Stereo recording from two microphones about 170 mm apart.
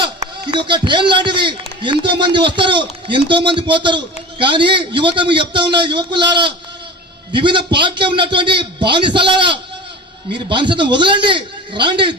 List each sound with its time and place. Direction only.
0.5 s a man's voice: 30° right (ahead or behind)